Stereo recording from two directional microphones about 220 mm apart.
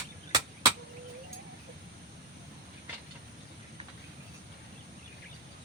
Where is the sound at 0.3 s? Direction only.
15° right (ahead or behind).